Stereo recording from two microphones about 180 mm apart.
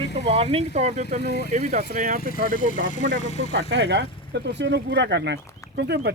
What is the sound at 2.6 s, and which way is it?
Speech, 45° left (ahead or behind).